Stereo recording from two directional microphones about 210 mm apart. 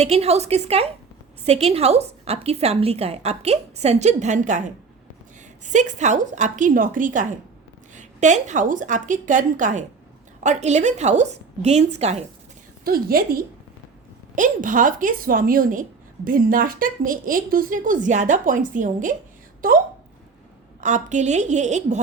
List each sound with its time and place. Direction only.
0.0 s a woman's voice: 30° right (ahead or behind)
12.8 s a woman's voice: 45° right (ahead or behind)
20.8 s a woman's voice: 35° right (ahead or behind)